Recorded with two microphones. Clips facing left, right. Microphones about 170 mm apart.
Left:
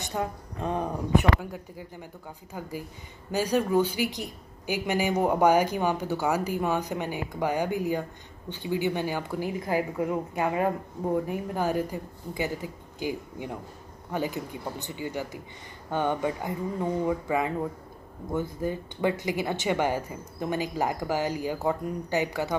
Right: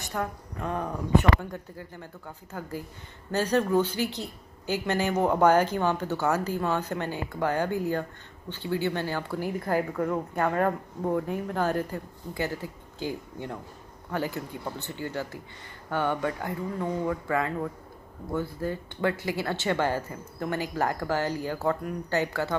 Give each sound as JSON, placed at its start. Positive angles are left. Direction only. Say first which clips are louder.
{"t": 0.0, "sound": "a woman's voice", "louder": "left 1 dB", "side_deg": 20}